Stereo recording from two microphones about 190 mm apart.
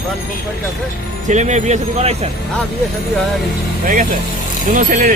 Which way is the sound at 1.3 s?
40° right (ahead or behind).